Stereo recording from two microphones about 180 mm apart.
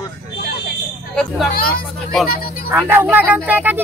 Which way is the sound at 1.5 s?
55° left (ahead or behind).